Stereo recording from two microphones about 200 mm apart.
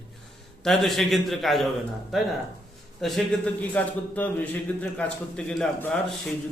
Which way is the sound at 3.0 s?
Centre (ahead or behind).